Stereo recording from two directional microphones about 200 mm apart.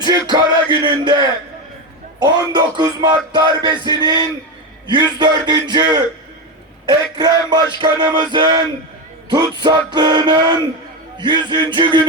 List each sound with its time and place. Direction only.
0.0 s music: 20° right (ahead or behind)